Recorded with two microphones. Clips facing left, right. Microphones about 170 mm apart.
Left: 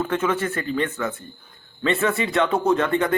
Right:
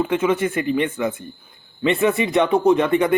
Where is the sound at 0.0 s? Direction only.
10° right (ahead or behind).